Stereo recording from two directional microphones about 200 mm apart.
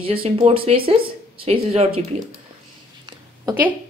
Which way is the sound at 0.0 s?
30° right (ahead or behind).